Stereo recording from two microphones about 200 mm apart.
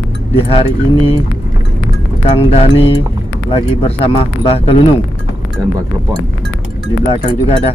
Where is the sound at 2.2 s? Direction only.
30° left (ahead or behind).